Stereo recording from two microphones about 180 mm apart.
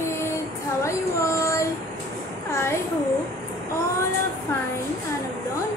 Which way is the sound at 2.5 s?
15° left (ahead or behind).